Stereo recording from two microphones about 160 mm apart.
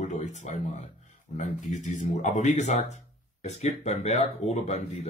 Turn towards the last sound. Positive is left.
turn(degrees=45)  # may be behind; listen again after turning